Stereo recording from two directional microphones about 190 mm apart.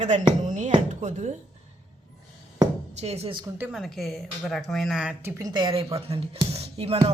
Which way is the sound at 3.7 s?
Centre (ahead or behind).